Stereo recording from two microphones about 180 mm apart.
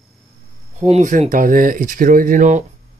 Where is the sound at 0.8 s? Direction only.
40° right (ahead or behind).